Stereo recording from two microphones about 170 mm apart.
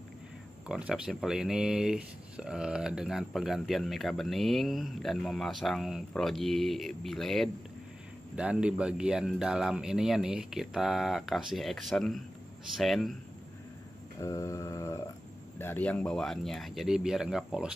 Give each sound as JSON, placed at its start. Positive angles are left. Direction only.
{"t": 0.7, "sound": "speech", "side_deg": -5}
{"t": 14.2, "sound": "a sound", "side_deg": 20}
{"t": 15.6, "sound": "speech", "side_deg": 10}